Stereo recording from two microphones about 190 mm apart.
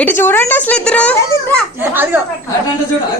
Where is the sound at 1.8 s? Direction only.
10° right (ahead or behind).